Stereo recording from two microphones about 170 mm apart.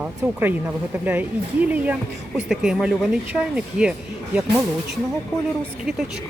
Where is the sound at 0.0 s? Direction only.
10° right (ahead or behind).